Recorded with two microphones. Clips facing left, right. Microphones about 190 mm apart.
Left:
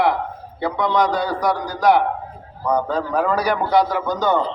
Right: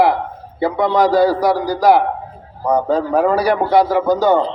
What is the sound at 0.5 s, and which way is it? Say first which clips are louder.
Speech: right 4 dB; 5° right (ahead or behind).